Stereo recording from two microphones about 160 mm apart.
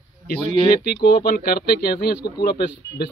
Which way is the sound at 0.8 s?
70° left (ahead or behind).